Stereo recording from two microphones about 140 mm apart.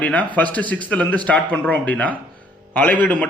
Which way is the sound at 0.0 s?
10° left (ahead or behind).